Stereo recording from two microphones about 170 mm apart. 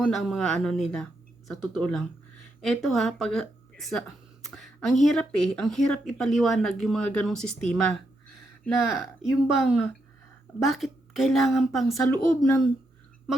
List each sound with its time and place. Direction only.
0.0 s speech: centre (ahead or behind)